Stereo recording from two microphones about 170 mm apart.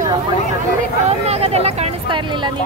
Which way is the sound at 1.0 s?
35° right (ahead or behind).